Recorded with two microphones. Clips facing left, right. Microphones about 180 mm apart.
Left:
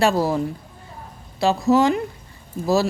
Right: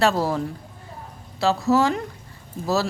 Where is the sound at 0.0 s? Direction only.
10° left (ahead or behind).